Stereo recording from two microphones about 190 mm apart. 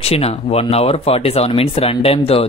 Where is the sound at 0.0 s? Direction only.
35° left (ahead or behind).